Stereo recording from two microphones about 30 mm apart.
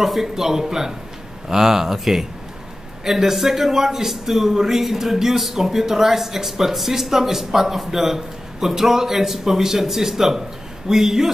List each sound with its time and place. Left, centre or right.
0.0 s a man's voice: centre